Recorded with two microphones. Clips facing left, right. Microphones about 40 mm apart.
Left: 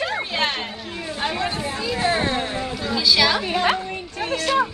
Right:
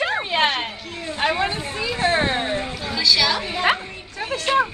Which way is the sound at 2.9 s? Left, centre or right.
Centre.